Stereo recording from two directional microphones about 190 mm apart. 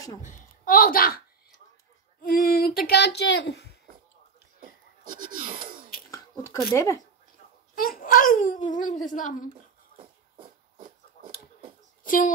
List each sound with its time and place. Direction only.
0.2 s a child's voice: 45° left (ahead or behind)
2.2 s speech: 50° left (ahead or behind)
5.0 s speech: 45° right (ahead or behind)
6.0 s a sound: 15° left (ahead or behind)
6.7 s speech: 15° left (ahead or behind)
7.7 s a child's voice: 50° left (ahead or behind)
12.1 s a child's voice: 45° left (ahead or behind)